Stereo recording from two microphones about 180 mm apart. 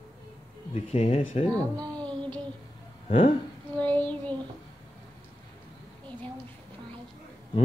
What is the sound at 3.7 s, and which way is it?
Child singing, 10° left (ahead or behind).